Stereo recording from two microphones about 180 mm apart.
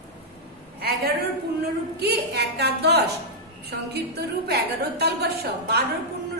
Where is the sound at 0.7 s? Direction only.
60° right (ahead or behind).